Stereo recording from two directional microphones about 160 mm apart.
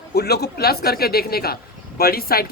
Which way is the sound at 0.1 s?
90° left.